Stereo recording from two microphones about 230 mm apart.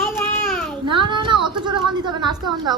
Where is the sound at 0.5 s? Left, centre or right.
Centre.